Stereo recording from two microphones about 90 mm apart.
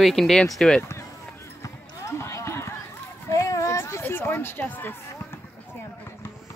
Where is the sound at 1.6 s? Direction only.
35° left (ahead or behind).